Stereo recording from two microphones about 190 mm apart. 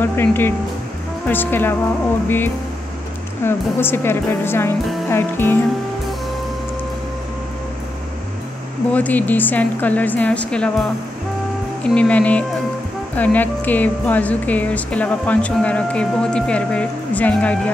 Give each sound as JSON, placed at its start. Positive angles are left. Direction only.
{"t": 0.0, "sound": "speech", "side_deg": 10}
{"t": 8.9, "sound": "speech", "side_deg": 10}
{"t": 11.9, "sound": "speech", "side_deg": 5}